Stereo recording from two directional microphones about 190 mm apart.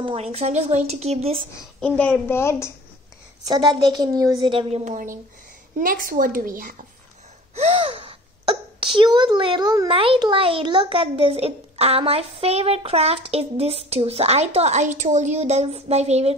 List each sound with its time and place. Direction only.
0.0 s speech: 30° right (ahead or behind)
1.6 s a child's voice: 5° left (ahead or behind)
3.4 s a woman's voice: 25° right (ahead or behind); by 6.8 s 45° right (ahead or behind)
7.5 s speech: 30° right (ahead or behind)